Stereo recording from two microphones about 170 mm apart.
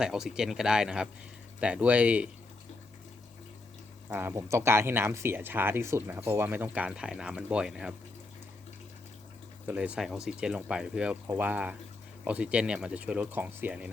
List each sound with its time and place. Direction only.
0.0 s speech: 5° right (ahead or behind)
4.1 s speech: 15° right (ahead or behind)
9.6 s speech: 5° right (ahead or behind)